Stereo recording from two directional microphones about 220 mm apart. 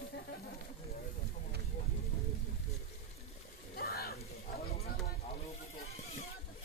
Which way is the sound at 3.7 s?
45° left (ahead or behind).